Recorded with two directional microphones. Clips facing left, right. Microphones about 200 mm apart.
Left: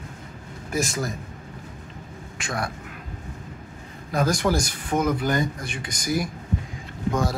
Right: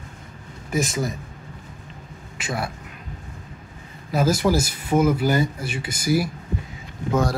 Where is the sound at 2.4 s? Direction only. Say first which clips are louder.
Right 2 dB; 5° right (ahead or behind).